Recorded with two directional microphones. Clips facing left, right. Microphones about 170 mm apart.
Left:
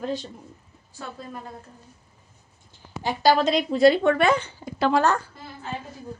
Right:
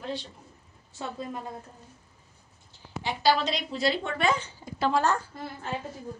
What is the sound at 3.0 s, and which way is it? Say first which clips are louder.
Speech: left 5 dB; 45° left (ahead or behind).